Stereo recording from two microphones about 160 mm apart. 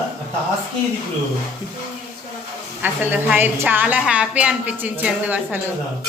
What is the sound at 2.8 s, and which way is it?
A woman's voice, 10° right (ahead or behind).